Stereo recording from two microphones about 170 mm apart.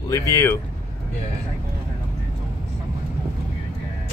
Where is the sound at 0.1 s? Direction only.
20° left (ahead or behind).